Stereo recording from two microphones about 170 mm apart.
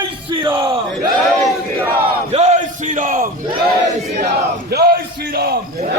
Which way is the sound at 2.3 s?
40° right (ahead or behind).